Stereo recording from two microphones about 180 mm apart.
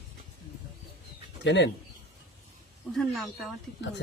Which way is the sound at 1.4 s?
75° left (ahead or behind).